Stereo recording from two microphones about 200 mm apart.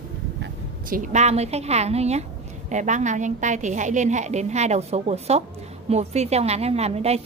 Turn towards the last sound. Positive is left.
turn(degrees=-30)  # may be behind; listen again after turning